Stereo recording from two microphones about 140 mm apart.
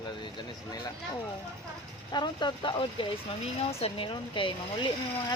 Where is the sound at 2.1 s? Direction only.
30° left (ahead or behind).